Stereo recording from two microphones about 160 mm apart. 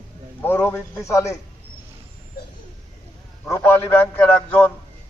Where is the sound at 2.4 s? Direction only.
70° left (ahead or behind).